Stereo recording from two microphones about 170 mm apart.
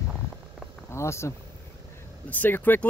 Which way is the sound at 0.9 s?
15° left (ahead or behind).